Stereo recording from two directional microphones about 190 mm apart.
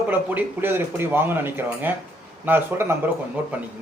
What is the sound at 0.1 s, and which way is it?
Speech, 10° right (ahead or behind).